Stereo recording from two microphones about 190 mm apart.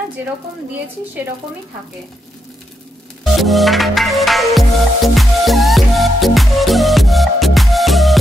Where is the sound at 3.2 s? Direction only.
Centre (ahead or behind).